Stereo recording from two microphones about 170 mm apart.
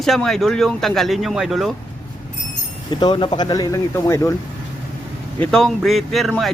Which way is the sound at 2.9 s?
25° left (ahead or behind).